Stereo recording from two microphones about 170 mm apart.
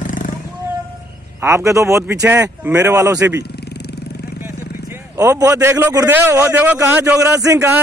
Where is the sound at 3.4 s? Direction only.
75° left (ahead or behind).